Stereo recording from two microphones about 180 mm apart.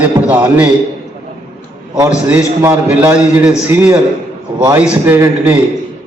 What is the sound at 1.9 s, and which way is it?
A man's voice, 15° right (ahead or behind).